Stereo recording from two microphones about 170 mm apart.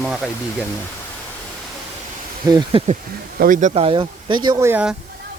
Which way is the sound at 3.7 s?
35° right (ahead or behind).